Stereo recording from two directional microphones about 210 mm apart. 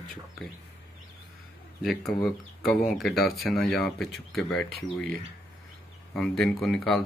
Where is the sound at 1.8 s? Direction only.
Centre (ahead or behind).